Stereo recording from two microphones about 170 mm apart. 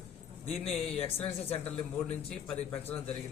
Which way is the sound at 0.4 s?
35° left (ahead or behind).